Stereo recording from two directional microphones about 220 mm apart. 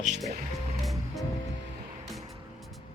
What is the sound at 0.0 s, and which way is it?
Speech, 35° right (ahead or behind).